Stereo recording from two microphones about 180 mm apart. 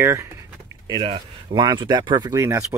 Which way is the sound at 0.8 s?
25° right (ahead or behind).